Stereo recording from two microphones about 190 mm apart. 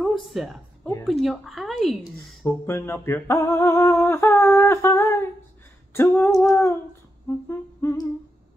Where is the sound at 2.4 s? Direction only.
10° left (ahead or behind).